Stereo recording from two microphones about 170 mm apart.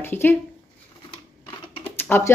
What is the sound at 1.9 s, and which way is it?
Typing, 15° left (ahead or behind).